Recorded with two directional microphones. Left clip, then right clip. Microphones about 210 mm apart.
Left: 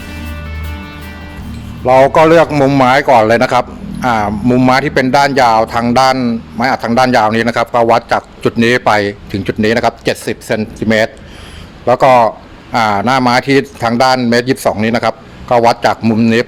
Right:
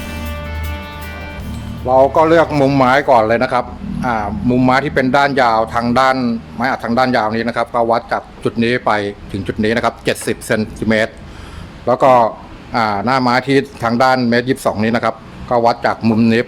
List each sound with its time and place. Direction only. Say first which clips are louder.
0.7 s music: even; centre (ahead or behind)
1.8 s speech: left 4 dB; 35° left (ahead or behind)
2.5 s speech: left 3 dB; 15° left (ahead or behind)
16.0 s speech: left 2 dB; 5° left (ahead or behind)